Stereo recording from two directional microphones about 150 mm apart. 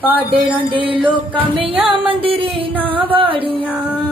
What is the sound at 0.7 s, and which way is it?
Music, 35° right (ahead or behind).